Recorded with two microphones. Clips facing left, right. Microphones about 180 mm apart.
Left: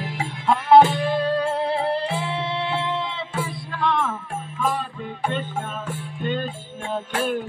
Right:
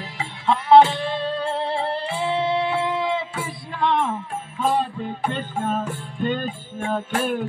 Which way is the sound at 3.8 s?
20° right (ahead or behind).